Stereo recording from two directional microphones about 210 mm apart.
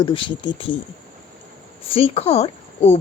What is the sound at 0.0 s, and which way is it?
Speech, 25° left (ahead or behind).